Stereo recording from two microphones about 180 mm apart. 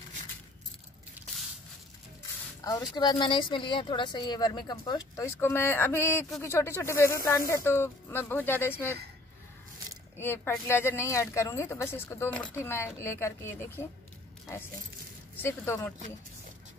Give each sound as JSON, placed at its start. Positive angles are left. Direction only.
{"t": 2.6, "sound": "speech", "side_deg": 20}
{"t": 10.1, "sound": "speech", "side_deg": 15}
{"t": 15.4, "sound": "speech", "side_deg": 15}